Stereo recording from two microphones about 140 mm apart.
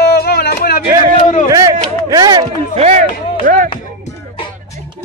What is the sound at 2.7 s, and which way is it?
Speech, 55° right (ahead or behind).